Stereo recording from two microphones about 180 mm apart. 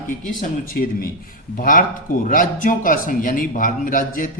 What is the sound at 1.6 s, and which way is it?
A man's voice, 50° left (ahead or behind).